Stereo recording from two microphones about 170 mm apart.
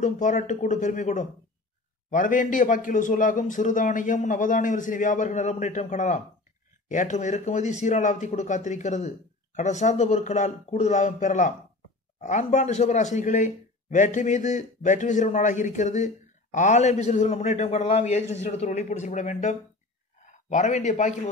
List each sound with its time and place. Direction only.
0.0 s speech: 45° left (ahead or behind)